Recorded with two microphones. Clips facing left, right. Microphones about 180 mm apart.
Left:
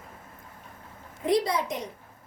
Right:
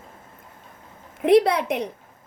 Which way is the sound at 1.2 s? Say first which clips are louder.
Right 8 dB; 65° right (ahead or behind).